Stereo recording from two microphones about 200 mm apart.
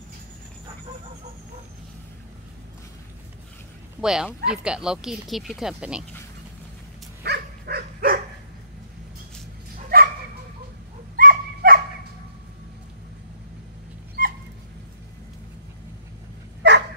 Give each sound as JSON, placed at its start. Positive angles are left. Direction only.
{"t": 4.0, "sound": "speech", "side_deg": -5}
{"t": 7.2, "sound": "dog", "side_deg": -55}
{"t": 9.9, "sound": "dog", "side_deg": -50}
{"t": 11.1, "sound": "dog", "side_deg": -45}
{"t": 14.2, "sound": "dog", "side_deg": -45}
{"t": 16.6, "sound": "dog", "side_deg": -60}